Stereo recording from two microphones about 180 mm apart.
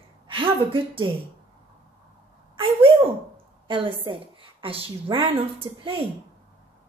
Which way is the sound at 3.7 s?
30° right (ahead or behind).